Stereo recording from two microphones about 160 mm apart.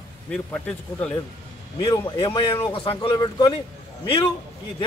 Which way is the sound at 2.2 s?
30° left (ahead or behind).